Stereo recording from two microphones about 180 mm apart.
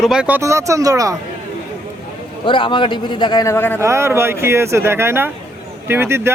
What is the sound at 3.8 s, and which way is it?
Speech, 15° right (ahead or behind).